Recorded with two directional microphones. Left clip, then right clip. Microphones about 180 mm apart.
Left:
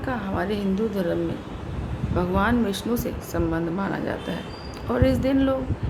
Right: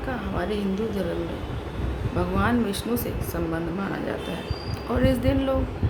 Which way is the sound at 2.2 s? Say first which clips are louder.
Left 2 dB; 30° left (ahead or behind).